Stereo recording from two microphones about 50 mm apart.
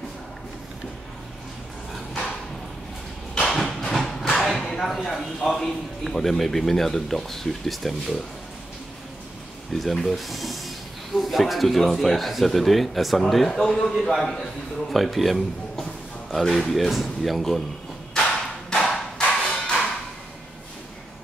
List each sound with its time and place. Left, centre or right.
3.6 s a sound: centre
5.0 s speech: centre
9.7 s speech: centre
18.7 s thump: centre